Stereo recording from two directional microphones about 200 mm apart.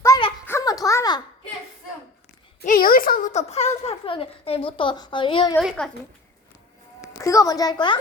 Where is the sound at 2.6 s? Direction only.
45° left (ahead or behind); by 5.5 s 25° left (ahead or behind).